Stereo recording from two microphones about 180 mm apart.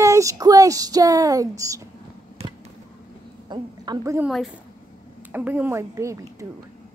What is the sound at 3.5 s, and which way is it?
Speech, 25° right (ahead or behind).